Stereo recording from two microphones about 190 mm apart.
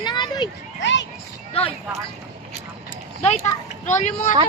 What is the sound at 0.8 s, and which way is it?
Speech, 70° left (ahead or behind).